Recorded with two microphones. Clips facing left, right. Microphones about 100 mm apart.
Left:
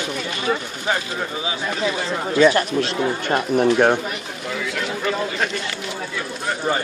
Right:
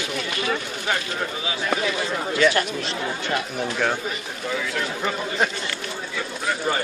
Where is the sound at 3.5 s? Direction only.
60° left (ahead or behind).